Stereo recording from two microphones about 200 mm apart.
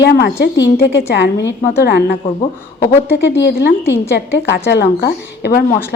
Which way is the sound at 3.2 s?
60° left (ahead or behind).